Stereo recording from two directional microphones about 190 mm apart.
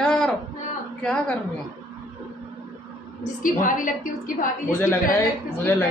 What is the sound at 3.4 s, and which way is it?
Speech, 45° left (ahead or behind).